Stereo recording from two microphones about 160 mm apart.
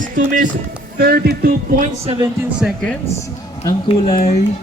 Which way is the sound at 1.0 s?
80° right.